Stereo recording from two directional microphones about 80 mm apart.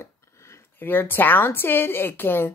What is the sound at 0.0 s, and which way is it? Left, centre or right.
A woman's voice, left.